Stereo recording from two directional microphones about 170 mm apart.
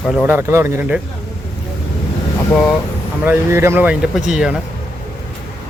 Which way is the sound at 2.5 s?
5° left (ahead or behind).